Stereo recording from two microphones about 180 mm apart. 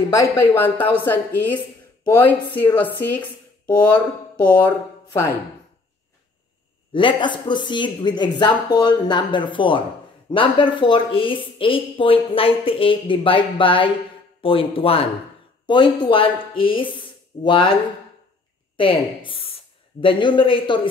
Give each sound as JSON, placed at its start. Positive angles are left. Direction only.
{"t": 0.2, "sound": "speech", "side_deg": 10}
{"t": 6.9, "sound": "a woman's voice", "side_deg": 30}
{"t": 18.8, "sound": "a woman's voice", "side_deg": 30}